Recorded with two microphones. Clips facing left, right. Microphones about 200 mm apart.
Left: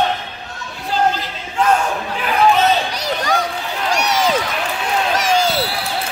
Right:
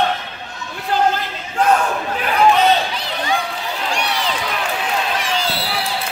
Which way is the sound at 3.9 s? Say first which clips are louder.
Left 8 dB; 45° left (ahead or behind).